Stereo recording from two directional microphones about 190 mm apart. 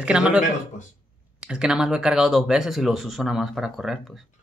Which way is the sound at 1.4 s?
5° right (ahead or behind).